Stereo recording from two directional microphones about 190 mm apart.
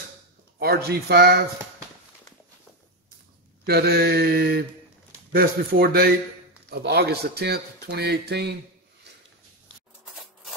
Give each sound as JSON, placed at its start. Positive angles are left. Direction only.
{"t": 0.6, "sound": "speech", "side_deg": -55}
{"t": 3.6, "sound": "speech", "side_deg": -55}